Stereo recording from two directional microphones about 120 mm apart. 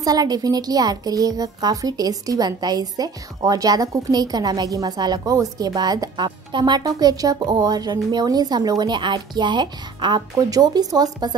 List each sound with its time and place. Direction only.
0.0 s a woman's voice: 30° right (ahead or behind)